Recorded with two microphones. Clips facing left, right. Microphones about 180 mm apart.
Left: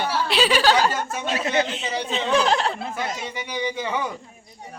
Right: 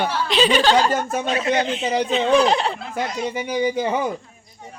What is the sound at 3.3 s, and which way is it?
Speech, 40° right (ahead or behind).